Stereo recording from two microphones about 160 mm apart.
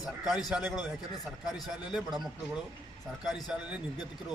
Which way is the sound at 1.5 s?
25° left (ahead or behind).